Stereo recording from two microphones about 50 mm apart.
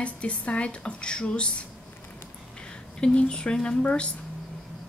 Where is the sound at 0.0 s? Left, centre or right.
Left.